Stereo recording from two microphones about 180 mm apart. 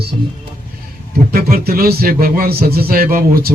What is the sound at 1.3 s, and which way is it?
Speech, 55° right (ahead or behind).